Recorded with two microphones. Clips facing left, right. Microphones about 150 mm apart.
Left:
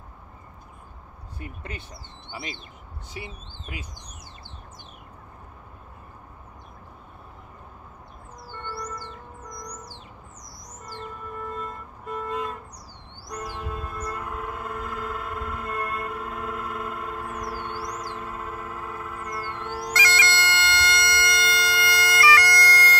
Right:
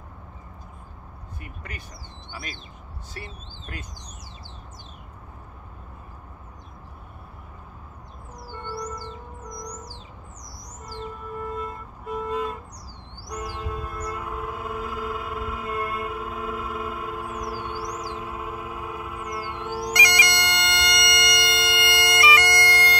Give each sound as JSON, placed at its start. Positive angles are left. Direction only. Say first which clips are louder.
{"t": 1.4, "sound": "speech", "louder": "left 4 dB", "side_deg": 25}
{"t": 3.2, "sound": "speech", "louder": "left 2 dB", "side_deg": 10}
{"t": 8.5, "sound": "music", "louder": "right 2 dB", "side_deg": -10}
{"t": 11.1, "sound": "music", "louder": "right 3 dB", "side_deg": -5}